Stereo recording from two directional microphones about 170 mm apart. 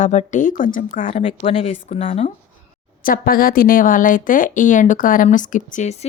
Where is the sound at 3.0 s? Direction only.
60° left (ahead or behind).